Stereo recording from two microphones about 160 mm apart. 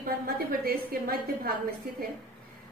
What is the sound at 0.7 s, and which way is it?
Speech, 70° right (ahead or behind).